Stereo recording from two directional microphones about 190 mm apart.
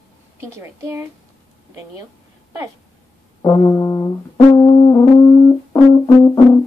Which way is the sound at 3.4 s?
15° left (ahead or behind).